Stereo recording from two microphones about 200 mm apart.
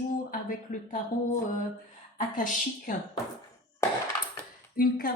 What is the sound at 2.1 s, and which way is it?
Speech, 40° left (ahead or behind).